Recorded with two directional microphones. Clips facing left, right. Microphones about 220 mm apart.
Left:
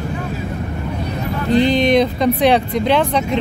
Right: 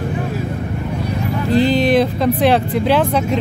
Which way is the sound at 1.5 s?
Centre (ahead or behind).